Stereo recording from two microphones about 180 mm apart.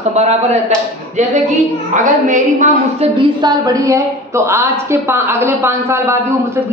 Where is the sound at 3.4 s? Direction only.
20° right (ahead or behind).